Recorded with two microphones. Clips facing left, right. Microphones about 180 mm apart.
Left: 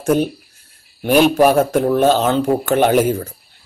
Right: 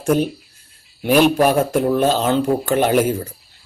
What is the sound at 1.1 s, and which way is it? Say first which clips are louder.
Speech: left 2 dB; 5° left (ahead or behind).